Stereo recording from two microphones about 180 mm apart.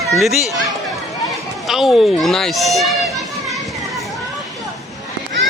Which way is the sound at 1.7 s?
Centre (ahead or behind).